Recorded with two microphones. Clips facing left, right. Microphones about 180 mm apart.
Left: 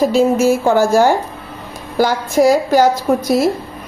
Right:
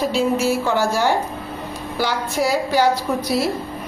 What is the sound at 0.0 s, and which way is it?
A woman's voice, 45° left (ahead or behind).